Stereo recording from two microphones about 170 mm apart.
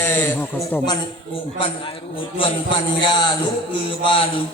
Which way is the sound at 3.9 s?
30° left (ahead or behind).